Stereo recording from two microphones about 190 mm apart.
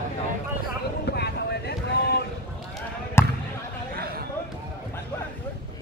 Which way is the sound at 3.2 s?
15° left (ahead or behind).